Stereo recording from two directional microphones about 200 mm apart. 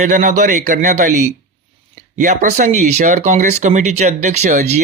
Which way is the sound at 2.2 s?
40° right (ahead or behind).